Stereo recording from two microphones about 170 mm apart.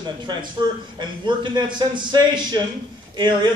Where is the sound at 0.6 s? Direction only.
25° right (ahead or behind).